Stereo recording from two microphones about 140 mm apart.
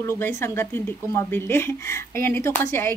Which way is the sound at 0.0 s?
20° left (ahead or behind).